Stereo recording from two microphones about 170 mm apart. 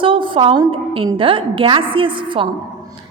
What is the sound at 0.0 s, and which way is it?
A woman's voice, 30° right (ahead or behind).